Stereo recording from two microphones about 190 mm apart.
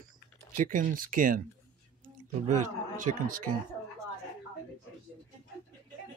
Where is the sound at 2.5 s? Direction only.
40° right (ahead or behind).